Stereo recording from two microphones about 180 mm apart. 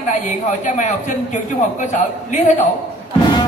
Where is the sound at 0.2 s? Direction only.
45° left (ahead or behind).